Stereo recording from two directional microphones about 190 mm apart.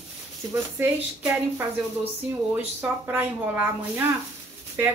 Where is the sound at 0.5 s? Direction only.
10° right (ahead or behind).